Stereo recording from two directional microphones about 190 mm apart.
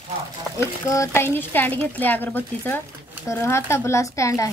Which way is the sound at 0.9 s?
15° left (ahead or behind).